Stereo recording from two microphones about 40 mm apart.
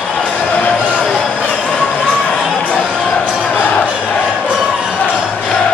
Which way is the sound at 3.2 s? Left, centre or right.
Right.